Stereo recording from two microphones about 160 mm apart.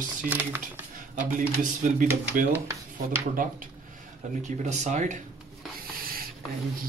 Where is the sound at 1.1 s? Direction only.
55° right (ahead or behind).